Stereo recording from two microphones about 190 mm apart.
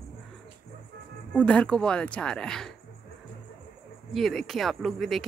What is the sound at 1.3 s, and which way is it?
Speech, 5° left (ahead or behind).